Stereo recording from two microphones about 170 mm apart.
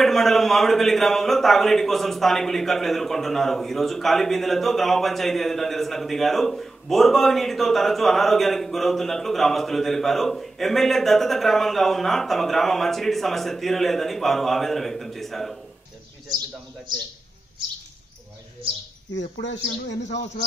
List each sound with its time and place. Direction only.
0.0 s a man's voice: centre (ahead or behind)
19.1 s speech: 90° left